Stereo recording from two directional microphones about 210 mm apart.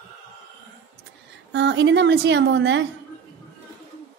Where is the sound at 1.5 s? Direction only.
55° right (ahead or behind).